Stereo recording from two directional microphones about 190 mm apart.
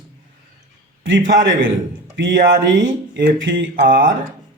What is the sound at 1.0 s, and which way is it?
A man's voice, 80° right.